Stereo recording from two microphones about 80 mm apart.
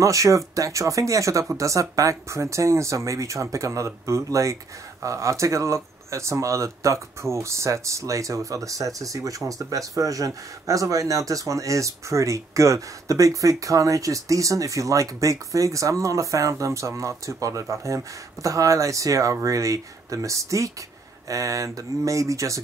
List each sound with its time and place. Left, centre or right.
0.0 s speech: right